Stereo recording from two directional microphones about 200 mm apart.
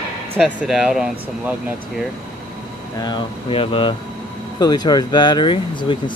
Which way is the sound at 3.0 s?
20° left (ahead or behind).